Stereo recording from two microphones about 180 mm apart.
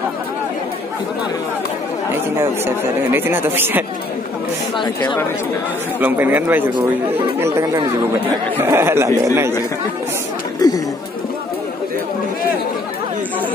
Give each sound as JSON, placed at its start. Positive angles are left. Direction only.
{"t": 2.3, "sound": "speech", "side_deg": -10}
{"t": 5.9, "sound": "speech", "side_deg": -10}
{"t": 10.6, "sound": "chatter", "side_deg": 20}